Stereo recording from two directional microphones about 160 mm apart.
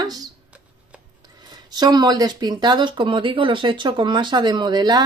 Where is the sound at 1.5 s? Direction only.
25° right (ahead or behind).